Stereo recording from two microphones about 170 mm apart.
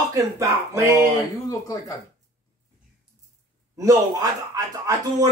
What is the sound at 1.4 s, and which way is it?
Speech, 20° left (ahead or behind).